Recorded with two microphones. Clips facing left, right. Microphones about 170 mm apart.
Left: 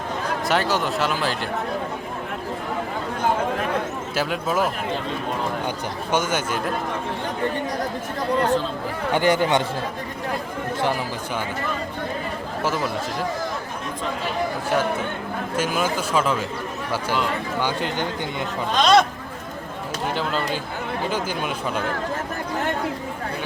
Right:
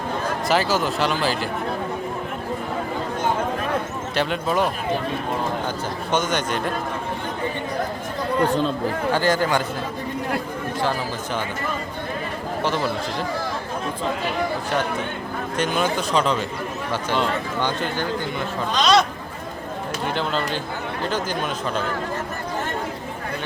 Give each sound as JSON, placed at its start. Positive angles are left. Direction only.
{"t": 0.4, "sound": "speech", "side_deg": 0}
{"t": 4.1, "sound": "speech", "side_deg": 5}
{"t": 6.1, "sound": "speech", "side_deg": 10}
{"t": 9.1, "sound": "speech", "side_deg": 20}
{"t": 12.6, "sound": "speech", "side_deg": 5}
{"t": 15.5, "sound": "speech", "side_deg": 5}
{"t": 17.6, "sound": "speech", "side_deg": 10}
{"t": 18.8, "sound": "speech", "side_deg": 50}
{"t": 20.1, "sound": "speech", "side_deg": 5}